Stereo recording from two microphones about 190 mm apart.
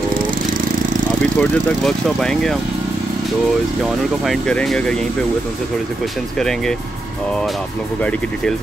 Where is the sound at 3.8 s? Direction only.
Centre (ahead or behind).